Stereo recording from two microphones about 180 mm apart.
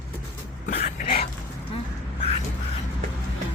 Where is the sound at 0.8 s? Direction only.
30° left (ahead or behind).